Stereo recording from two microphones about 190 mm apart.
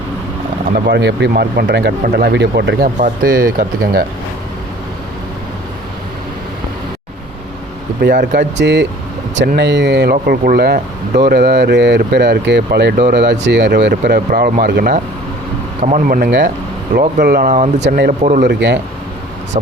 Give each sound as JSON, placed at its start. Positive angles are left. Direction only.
{"t": 0.9, "sound": "speech", "side_deg": -65}
{"t": 3.0, "sound": "speech", "side_deg": -50}
{"t": 8.0, "sound": "speech", "side_deg": -60}
{"t": 13.9, "sound": "speech", "side_deg": -45}
{"t": 18.2, "sound": "speech", "side_deg": -40}
{"t": 18.4, "sound": "speech", "side_deg": -65}